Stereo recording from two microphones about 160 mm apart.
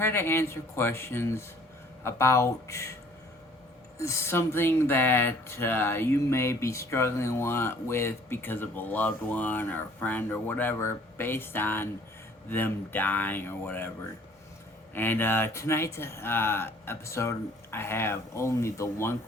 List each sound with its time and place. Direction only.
0.0 s speech: 15° left (ahead or behind)
3.9 s speech: 20° left (ahead or behind)
14.9 s speech: 15° left (ahead or behind)